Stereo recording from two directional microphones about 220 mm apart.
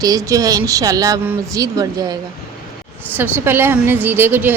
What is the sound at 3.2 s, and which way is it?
A woman's voice, 10° right (ahead or behind).